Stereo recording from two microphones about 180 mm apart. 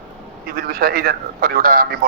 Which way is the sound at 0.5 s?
55° right (ahead or behind).